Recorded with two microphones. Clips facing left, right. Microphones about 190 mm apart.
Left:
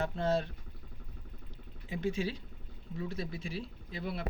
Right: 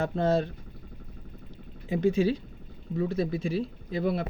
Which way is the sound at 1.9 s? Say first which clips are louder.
Right 10 dB; 45° right (ahead or behind).